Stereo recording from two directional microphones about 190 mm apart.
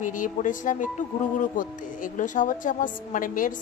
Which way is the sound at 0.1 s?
45° left (ahead or behind).